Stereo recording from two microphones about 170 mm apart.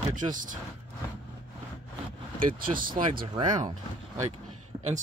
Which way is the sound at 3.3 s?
25° right (ahead or behind).